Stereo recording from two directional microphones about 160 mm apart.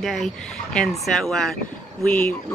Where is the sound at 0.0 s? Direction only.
Centre (ahead or behind).